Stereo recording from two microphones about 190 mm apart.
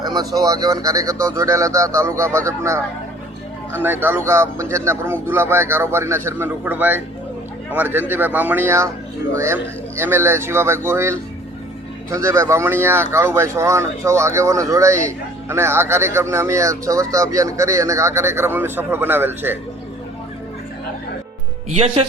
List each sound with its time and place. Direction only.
0.0 s a sound: 20° right (ahead or behind)
0.3 s speech: 20° right (ahead or behind)
3.8 s speech: 10° right (ahead or behind)